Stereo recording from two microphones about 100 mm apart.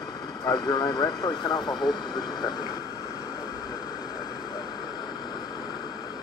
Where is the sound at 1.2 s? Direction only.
45° left (ahead or behind).